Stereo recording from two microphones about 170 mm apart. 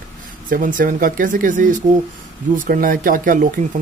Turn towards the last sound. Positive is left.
turn(degrees=-55)  # may be behind; listen again after turning